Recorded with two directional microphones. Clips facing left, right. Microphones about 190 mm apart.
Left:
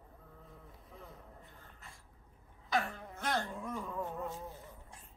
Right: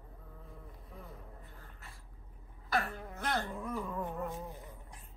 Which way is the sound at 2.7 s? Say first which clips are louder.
Even; 5° right (ahead or behind).